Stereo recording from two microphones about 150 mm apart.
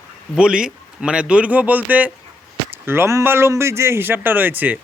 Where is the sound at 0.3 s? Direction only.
5° right (ahead or behind).